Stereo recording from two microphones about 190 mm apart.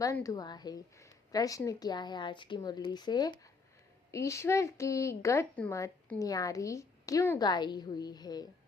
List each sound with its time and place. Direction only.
0.0 s a woman's voice: 15° left (ahead or behind)